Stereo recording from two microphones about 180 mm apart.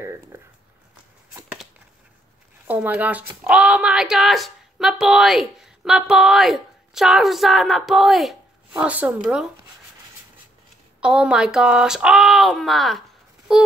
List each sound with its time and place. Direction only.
0.0 s a sound: 15° right (ahead or behind)
2.6 s speech: 10° right (ahead or behind)
11.0 s speech: 5° right (ahead or behind)